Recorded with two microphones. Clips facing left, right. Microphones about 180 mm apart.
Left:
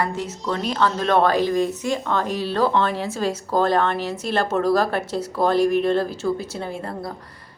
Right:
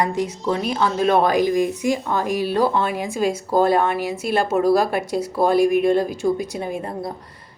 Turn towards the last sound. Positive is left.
turn(degrees=-20)  # may be behind; listen again after turning